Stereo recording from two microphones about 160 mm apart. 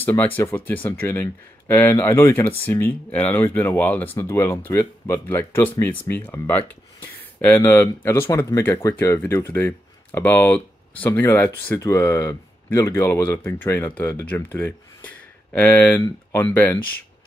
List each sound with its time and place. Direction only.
0.0 s speech: 10° left (ahead or behind)
15.0 s a sound: 10° left (ahead or behind)
16.0 s speech: 15° left (ahead or behind)